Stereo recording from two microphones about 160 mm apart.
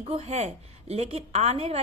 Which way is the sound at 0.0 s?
40° right (ahead or behind).